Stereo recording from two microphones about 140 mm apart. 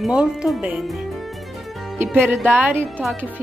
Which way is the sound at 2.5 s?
15° right (ahead or behind).